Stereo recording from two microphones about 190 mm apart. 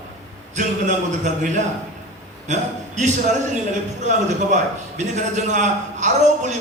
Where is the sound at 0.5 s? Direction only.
40° right (ahead or behind).